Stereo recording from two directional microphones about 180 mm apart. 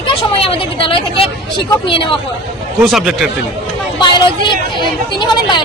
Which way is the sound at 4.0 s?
25° left (ahead or behind).